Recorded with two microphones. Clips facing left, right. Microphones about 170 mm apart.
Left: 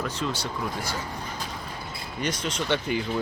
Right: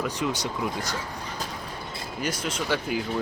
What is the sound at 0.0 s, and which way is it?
Speech, 15° right (ahead or behind).